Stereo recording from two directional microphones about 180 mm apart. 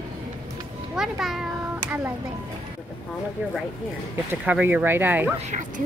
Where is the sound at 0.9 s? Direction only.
Centre (ahead or behind).